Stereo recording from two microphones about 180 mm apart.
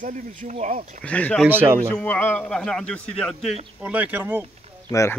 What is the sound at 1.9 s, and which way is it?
Speech, 10° left (ahead or behind).